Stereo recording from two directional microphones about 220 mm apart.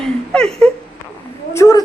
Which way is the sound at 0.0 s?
5° left (ahead or behind).